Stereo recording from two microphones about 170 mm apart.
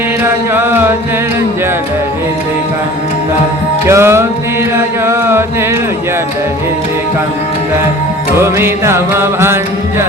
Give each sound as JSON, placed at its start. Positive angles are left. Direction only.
{"t": 0.5, "sound": "chant", "side_deg": -15}
{"t": 3.8, "sound": "music", "side_deg": -15}
{"t": 8.4, "sound": "music", "side_deg": -15}